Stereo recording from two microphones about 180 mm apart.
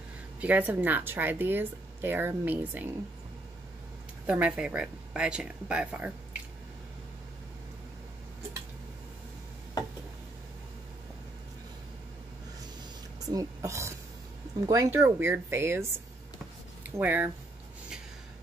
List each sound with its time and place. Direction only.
0.4 s speech: 10° right (ahead or behind)
4.3 s speech: 5° right (ahead or behind)
13.2 s speech: 20° right (ahead or behind)